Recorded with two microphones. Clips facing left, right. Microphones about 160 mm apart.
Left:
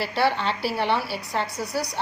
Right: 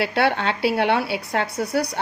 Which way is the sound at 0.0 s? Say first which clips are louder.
Right 3 dB; 60° right (ahead or behind).